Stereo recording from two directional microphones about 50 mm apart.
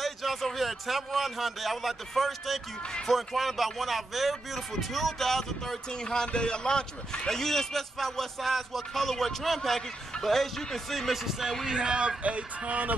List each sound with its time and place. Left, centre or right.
0.0 s a man's voice: centre
11.6 s a man's voice: centre